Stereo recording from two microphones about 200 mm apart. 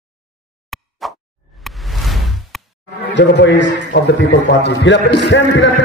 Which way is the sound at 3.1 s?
60° left (ahead or behind).